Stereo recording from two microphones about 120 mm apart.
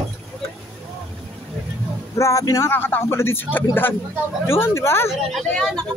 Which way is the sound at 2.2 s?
30° left (ahead or behind).